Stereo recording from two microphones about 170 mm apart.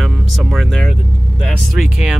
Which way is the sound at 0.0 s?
Centre (ahead or behind).